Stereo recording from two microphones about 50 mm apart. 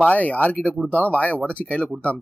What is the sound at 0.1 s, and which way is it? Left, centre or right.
Speech, left.